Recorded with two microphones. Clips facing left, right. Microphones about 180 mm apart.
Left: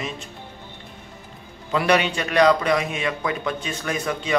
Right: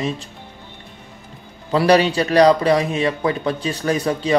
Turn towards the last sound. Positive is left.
turn(degrees=-35)  # may be behind; listen again after turning